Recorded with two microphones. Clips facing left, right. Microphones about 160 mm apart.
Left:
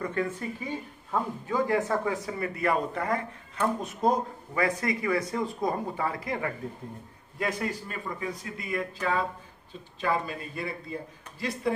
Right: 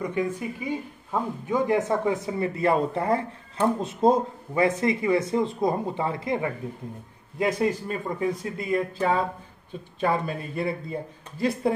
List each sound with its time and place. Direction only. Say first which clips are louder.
0.0 s speech: right 3 dB; 15° right (ahead or behind); by 10.7 s 30° right (ahead or behind)